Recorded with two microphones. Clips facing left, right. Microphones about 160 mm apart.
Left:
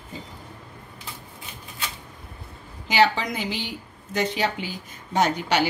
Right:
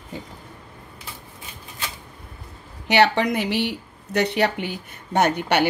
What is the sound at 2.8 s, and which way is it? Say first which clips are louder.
A woman's voice: right 3 dB; 65° right (ahead or behind).